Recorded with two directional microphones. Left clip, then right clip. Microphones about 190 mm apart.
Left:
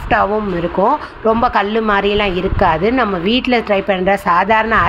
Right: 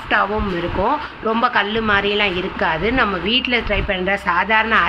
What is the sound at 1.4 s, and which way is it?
Speech, 30° left (ahead or behind).